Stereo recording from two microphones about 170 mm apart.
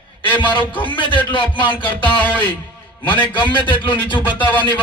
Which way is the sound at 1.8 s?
10° left (ahead or behind).